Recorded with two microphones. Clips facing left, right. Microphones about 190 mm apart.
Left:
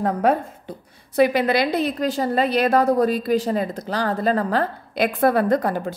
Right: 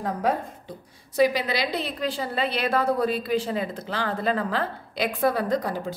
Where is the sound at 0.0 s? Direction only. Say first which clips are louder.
Left 6 dB; 60° left (ahead or behind).